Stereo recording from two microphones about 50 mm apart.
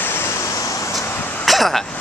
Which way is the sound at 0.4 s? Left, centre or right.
Left.